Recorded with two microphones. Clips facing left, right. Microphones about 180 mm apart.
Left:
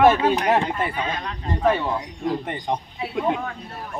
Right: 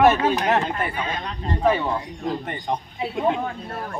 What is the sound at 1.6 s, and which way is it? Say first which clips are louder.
Speech: even; centre (ahead or behind).